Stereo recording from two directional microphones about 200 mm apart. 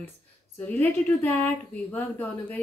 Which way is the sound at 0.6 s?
10° left (ahead or behind).